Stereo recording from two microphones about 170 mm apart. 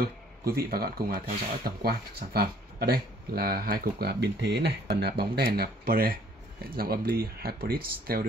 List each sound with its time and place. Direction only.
0.0 s speech: 60° right (ahead or behind)